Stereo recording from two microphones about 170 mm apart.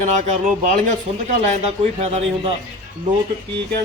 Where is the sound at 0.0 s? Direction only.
45° right (ahead or behind).